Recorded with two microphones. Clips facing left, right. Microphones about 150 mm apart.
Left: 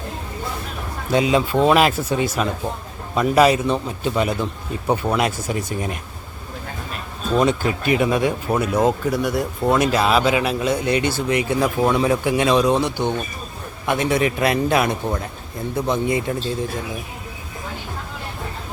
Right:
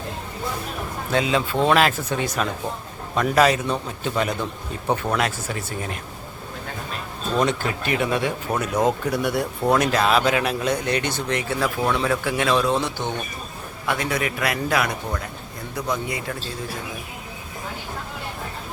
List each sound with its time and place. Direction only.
1.1 s speech: 15° left (ahead or behind)
7.3 s a man's voice: 10° left (ahead or behind); by 16.4 s 25° left (ahead or behind)